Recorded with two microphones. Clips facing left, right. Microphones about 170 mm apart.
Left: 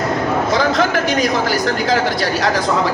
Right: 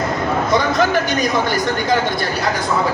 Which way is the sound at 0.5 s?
90° left.